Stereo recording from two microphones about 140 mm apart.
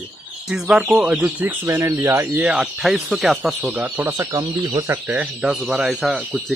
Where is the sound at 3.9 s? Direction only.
20° right (ahead or behind).